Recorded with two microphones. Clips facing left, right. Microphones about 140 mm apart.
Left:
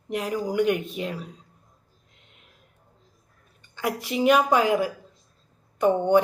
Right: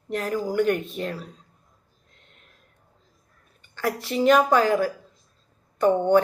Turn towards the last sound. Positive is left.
turn(degrees=15)  # may be behind; listen again after turning